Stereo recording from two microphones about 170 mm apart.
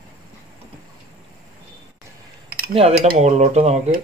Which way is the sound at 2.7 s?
35° right (ahead or behind).